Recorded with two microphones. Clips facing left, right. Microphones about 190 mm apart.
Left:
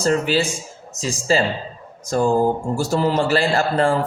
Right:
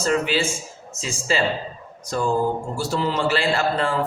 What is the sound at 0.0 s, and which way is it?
A man's voice, 35° left (ahead or behind).